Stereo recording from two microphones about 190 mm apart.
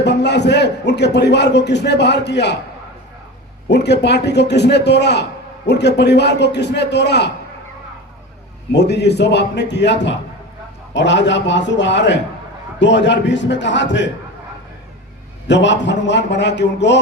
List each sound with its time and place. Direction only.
0.0 s a man's voice: 65° left (ahead or behind)
3.7 s a man's voice: 65° left (ahead or behind)
8.7 s a man's voice: 65° left (ahead or behind)
15.4 s a man's voice: 70° left (ahead or behind)